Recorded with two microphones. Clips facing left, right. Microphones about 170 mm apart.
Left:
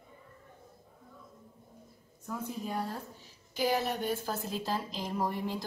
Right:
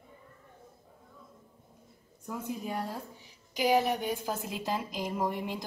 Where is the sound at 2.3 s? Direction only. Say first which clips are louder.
Right 1 dB; 10° right (ahead or behind).